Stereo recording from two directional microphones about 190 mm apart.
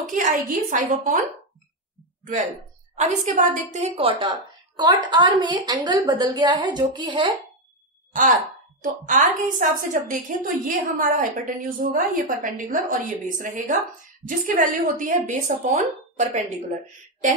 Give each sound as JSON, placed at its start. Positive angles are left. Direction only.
{"t": 0.1, "sound": "a woman's voice", "side_deg": -45}
{"t": 3.0, "sound": "a woman's voice", "side_deg": -40}
{"t": 8.1, "sound": "a woman's voice", "side_deg": -45}